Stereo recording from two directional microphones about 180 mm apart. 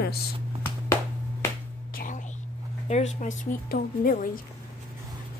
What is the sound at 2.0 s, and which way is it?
Whispering, 45° left (ahead or behind).